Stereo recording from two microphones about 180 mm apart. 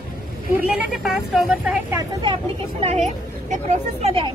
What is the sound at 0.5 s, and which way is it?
Speech, 5° right (ahead or behind).